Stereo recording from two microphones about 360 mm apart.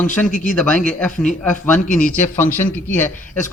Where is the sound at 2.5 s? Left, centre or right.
Centre.